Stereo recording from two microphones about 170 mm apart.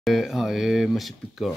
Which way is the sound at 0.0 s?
Centre (ahead or behind).